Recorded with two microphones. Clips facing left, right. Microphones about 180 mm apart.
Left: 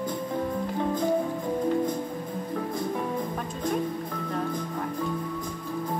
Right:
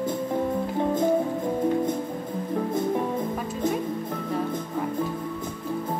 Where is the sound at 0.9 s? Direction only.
25° right (ahead or behind).